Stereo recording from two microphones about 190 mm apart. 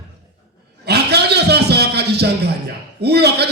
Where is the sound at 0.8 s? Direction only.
60° right (ahead or behind).